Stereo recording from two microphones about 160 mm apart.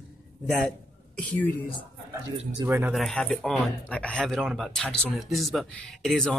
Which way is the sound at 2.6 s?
15° right (ahead or behind).